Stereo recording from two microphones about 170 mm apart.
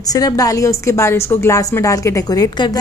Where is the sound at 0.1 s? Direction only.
20° left (ahead or behind).